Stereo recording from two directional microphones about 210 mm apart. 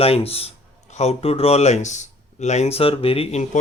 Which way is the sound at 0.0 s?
30° left (ahead or behind).